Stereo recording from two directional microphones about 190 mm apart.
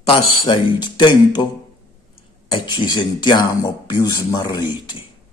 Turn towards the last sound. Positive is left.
turn(degrees=20)  # may be behind; listen again after turning